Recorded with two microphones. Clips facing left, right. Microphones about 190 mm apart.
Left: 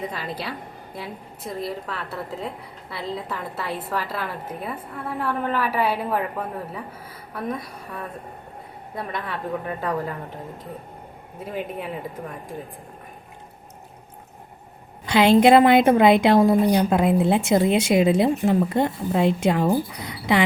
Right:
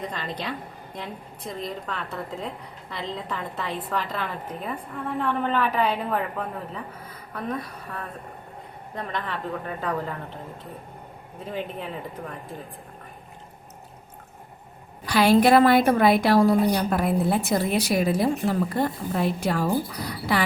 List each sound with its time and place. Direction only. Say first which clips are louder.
0.1 s a woman's voice: left 1 dB; 5° left (ahead or behind)
11.3 s a woman's voice: left 2 dB; 10° left (ahead or behind)
15.0 s a woman's voice: left 3 dB; 20° left (ahead or behind)